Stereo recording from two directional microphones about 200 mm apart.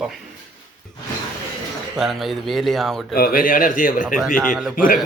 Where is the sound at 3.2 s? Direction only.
45° left (ahead or behind).